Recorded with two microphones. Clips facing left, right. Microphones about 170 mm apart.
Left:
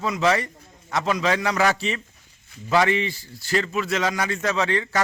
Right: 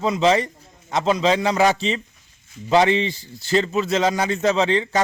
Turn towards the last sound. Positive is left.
turn(degrees=-25)  # may be behind; listen again after turning